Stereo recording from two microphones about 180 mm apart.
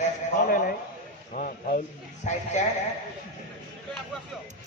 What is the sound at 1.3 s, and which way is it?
A man's voice, 45° left (ahead or behind).